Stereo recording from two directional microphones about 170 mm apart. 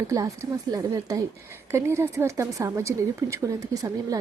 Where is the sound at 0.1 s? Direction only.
20° right (ahead or behind).